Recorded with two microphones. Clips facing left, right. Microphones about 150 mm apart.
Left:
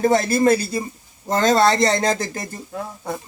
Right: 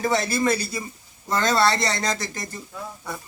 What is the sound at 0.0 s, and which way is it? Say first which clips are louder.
Speech: left 6 dB; 50° left (ahead or behind).